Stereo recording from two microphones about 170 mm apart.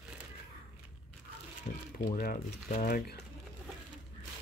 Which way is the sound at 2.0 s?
55° left (ahead or behind).